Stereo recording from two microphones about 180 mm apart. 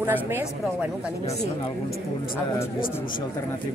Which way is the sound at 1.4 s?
55° left (ahead or behind).